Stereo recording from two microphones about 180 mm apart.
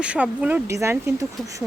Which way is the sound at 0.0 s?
5° right (ahead or behind).